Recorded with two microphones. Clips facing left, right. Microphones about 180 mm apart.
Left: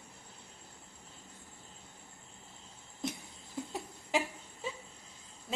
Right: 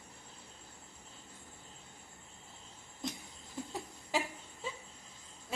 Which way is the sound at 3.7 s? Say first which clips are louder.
Left 2 dB; 20° left (ahead or behind).